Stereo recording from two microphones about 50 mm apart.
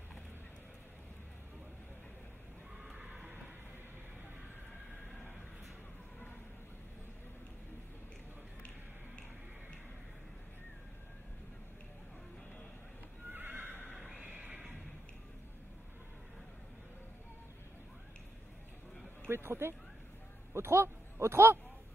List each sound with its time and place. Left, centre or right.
2.8 s neigh: centre
13.3 s horse: right
13.9 s neigh: centre
14.2 s neigh: right
19.2 s speech: right